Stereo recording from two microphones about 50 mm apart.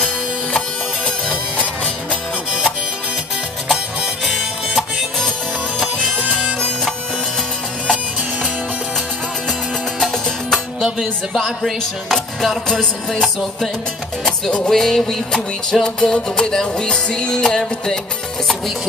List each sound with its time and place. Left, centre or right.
1.0 s music: centre
4.2 s music: centre
10.5 s music: centre